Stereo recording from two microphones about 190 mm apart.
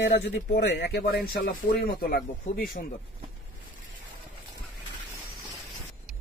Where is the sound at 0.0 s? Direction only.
65° left (ahead or behind).